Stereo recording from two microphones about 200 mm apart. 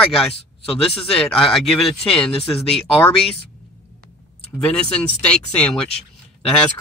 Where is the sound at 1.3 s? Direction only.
Centre (ahead or behind).